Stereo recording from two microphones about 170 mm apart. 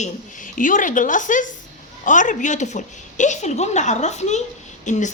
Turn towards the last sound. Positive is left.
turn(degrees=45)  # may be behind; listen again after turning